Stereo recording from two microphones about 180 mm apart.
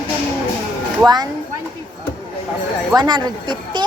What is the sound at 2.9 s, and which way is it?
Speech, 25° right (ahead or behind).